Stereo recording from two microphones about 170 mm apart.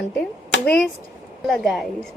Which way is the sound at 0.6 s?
5° left (ahead or behind).